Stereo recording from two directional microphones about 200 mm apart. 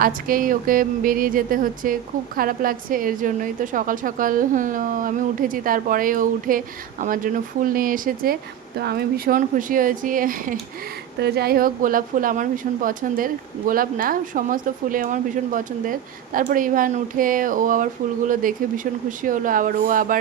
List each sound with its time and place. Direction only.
0.0 s speech: 45° right (ahead or behind)